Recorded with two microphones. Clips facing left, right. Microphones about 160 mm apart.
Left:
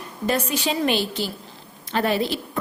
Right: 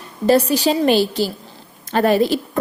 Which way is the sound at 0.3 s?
35° right (ahead or behind).